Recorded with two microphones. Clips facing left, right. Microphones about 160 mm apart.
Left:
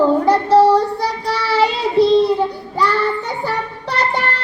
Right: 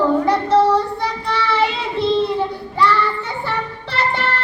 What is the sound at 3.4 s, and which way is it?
Music, 40° left (ahead or behind).